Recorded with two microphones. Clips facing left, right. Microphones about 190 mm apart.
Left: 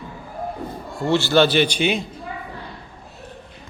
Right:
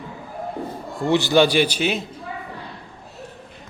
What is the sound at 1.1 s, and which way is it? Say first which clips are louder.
Speech: even; 15° right (ahead or behind).